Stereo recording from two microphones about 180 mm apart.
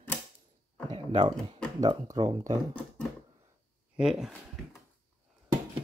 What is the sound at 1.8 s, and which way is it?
Speech, 20° right (ahead or behind).